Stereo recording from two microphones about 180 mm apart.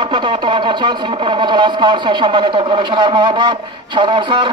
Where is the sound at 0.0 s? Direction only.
25° right (ahead or behind).